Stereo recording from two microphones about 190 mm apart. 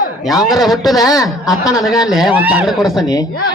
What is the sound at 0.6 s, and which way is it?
Speech, centre (ahead or behind).